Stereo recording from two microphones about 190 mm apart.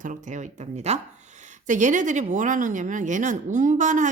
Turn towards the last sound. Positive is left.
turn(degrees=-40)  # may be behind; listen again after turning